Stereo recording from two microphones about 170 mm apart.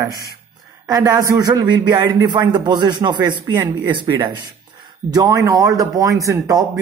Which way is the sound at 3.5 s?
15° right (ahead or behind).